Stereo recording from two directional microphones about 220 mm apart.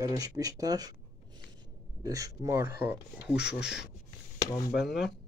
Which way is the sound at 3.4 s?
50° left (ahead or behind).